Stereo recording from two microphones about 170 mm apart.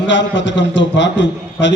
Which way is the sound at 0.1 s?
90° left.